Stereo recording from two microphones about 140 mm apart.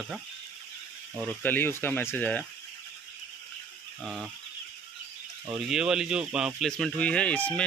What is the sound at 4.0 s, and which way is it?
Speech, centre (ahead or behind).